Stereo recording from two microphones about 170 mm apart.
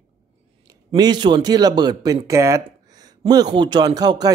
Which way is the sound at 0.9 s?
25° right (ahead or behind).